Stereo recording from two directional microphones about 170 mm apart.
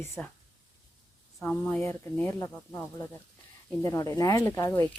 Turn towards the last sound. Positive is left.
turn(degrees=20)  # may be behind; listen again after turning